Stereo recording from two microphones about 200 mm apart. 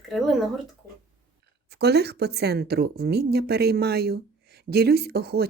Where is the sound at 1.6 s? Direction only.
55° right (ahead or behind).